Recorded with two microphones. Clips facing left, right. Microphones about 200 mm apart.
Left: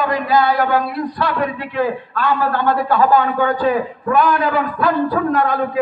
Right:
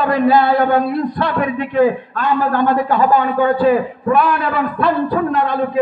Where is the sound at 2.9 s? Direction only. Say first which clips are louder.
Even; 15° right (ahead or behind).